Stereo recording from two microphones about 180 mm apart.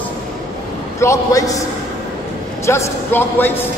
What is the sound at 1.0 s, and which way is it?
Speech, 15° left (ahead or behind).